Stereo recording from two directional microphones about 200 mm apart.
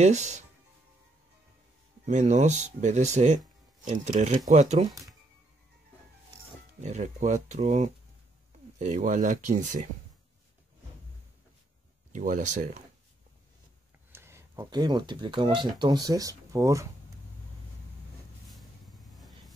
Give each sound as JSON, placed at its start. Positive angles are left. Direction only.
{"t": 0.0, "sound": "speech", "side_deg": -35}
{"t": 2.0, "sound": "speech", "side_deg": -35}
{"t": 6.8, "sound": "speech", "side_deg": -35}
{"t": 12.1, "sound": "speech", "side_deg": -40}
{"t": 14.1, "sound": "speech", "side_deg": -10}
{"t": 19.1, "sound": "a sound", "side_deg": 0}